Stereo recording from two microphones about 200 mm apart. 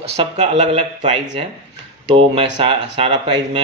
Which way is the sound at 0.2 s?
30° right (ahead or behind).